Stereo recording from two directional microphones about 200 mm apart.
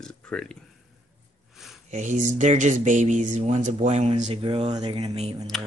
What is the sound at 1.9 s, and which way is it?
Speech, 35° right (ahead or behind).